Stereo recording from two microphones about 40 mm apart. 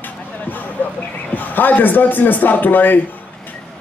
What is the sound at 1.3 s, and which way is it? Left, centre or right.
A man's voice, left.